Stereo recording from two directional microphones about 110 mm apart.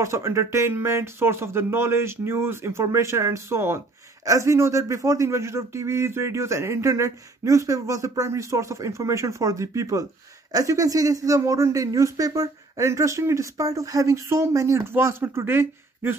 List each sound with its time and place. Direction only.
0.0 s speech: 25° right (ahead or behind)